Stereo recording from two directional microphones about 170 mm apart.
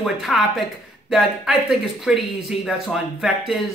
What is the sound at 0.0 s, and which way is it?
Speech, centre (ahead or behind).